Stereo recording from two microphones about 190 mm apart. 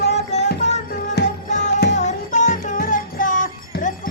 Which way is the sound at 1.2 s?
60° left (ahead or behind).